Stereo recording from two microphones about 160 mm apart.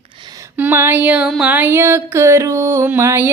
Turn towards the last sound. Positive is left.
turn(degrees=-15)  # may be behind; listen again after turning